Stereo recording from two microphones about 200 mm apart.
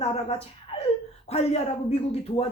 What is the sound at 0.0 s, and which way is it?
A man's voice, 30° left (ahead or behind).